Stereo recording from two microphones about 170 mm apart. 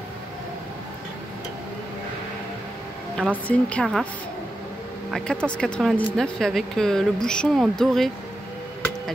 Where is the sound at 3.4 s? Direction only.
5° left (ahead or behind).